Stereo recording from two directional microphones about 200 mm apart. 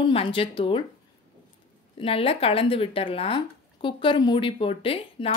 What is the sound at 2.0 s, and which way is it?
Speech, 30° left (ahead or behind).